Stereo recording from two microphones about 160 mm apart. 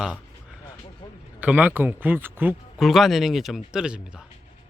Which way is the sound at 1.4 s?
10° right (ahead or behind).